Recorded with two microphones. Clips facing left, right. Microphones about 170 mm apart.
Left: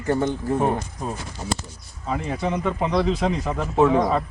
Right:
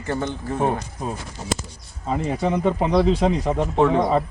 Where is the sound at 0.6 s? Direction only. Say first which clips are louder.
Even; 5° right (ahead or behind).